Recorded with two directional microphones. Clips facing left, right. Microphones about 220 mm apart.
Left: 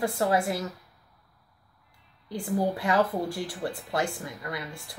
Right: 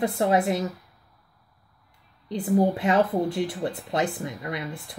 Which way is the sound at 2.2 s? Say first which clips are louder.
Right 6 dB; 20° right (ahead or behind).